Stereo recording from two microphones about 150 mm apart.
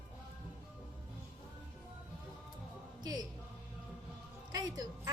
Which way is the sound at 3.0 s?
25° right (ahead or behind).